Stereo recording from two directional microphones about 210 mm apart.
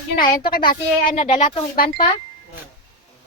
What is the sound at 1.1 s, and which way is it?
Speech, 30° left (ahead or behind).